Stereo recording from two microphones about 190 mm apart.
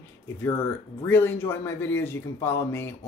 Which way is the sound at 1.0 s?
10° left (ahead or behind).